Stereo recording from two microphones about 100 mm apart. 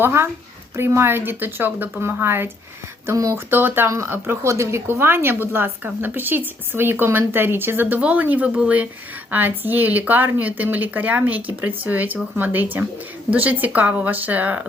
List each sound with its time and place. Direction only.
0.0 s speech: 25° right (ahead or behind)
3.1 s speech: 35° right (ahead or behind)
3.3 s speech: 20° right (ahead or behind)